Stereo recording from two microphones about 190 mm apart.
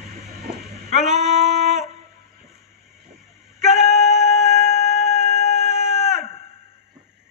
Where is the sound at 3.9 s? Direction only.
35° left (ahead or behind).